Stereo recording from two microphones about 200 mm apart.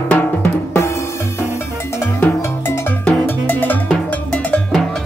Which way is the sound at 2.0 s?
10° left (ahead or behind).